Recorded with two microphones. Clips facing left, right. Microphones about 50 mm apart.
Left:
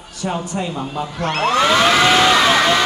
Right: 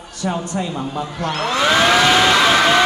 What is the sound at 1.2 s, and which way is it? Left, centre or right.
Speech, left.